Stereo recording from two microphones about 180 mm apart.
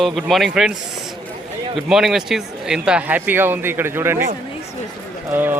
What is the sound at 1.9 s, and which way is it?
A man's voice, centre (ahead or behind).